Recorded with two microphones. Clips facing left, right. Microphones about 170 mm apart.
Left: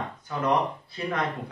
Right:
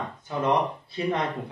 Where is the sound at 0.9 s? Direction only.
20° right (ahead or behind).